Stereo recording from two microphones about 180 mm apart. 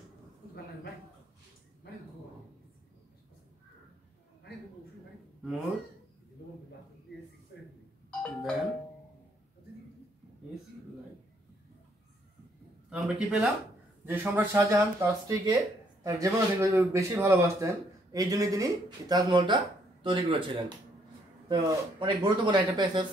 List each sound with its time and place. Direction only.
6.4 s a sound: 65° left (ahead or behind)
8.2 s doorbell: centre (ahead or behind)
12.9 s speech: 5° right (ahead or behind); by 23.0 s 25° right (ahead or behind)